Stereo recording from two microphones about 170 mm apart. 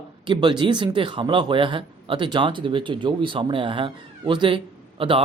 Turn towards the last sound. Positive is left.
turn(degrees=-30)  # may be behind; listen again after turning